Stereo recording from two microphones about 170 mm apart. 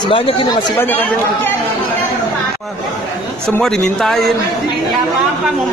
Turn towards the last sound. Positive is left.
turn(degrees=0)  # may be behind; listen again after turning